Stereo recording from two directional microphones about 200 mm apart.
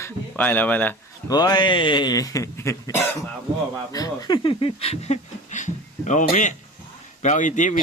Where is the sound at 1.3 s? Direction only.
20° left (ahead or behind).